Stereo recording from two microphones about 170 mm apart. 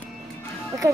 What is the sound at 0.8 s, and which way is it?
Speech, 20° right (ahead or behind).